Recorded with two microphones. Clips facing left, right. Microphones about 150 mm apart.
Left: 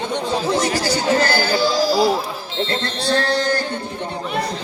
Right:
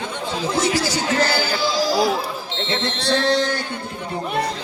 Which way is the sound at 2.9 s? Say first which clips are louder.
Right 3 dB; 20° right (ahead or behind).